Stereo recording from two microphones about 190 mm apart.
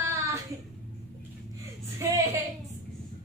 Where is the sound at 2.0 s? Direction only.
15° right (ahead or behind).